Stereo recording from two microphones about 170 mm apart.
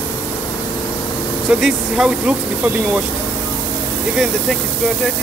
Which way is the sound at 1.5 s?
5° right (ahead or behind).